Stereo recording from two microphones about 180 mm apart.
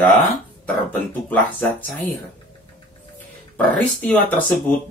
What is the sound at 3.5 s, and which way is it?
Speech, 10° left (ahead or behind).